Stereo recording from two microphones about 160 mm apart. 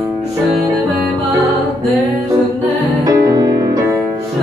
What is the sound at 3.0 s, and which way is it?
Music, 20° right (ahead or behind).